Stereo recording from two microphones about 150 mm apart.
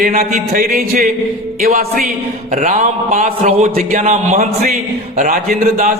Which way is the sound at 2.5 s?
60° right (ahead or behind).